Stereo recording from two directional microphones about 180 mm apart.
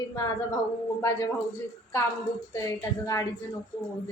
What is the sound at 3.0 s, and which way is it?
Speech, 15° left (ahead or behind).